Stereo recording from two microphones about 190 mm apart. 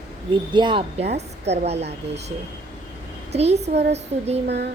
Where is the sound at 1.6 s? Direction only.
35° right (ahead or behind).